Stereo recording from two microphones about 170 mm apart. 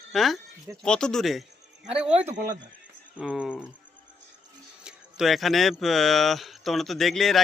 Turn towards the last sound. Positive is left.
turn(degrees=0)  # may be behind; listen again after turning